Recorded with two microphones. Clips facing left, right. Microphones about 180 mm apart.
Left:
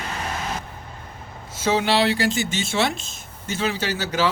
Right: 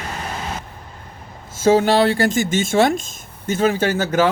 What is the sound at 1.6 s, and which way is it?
Speech, 45° right (ahead or behind).